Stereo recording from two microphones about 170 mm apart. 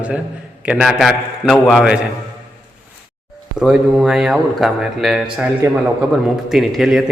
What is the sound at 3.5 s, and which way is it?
A man's voice, 5° right (ahead or behind).